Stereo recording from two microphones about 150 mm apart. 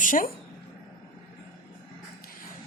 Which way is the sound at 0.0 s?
60° left (ahead or behind).